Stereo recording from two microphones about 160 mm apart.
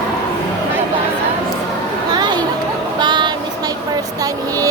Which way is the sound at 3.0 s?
30° right (ahead or behind).